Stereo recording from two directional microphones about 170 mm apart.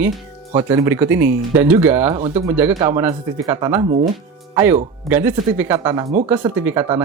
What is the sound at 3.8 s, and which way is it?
Speech, 45° right (ahead or behind).